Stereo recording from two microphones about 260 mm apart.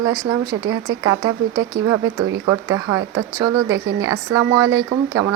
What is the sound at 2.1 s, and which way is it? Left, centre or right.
Speech, right.